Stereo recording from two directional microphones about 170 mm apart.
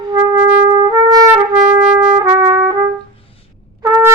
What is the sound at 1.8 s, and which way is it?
Trumpet, 5° right (ahead or behind).